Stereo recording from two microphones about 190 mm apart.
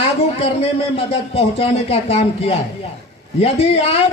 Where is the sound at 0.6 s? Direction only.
30° left (ahead or behind).